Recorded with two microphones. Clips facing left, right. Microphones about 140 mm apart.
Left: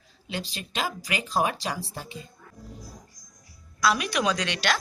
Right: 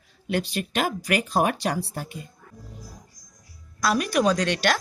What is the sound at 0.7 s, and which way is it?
Speech, 55° right (ahead or behind).